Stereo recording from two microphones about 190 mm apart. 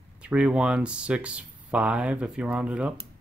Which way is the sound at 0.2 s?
5° right (ahead or behind).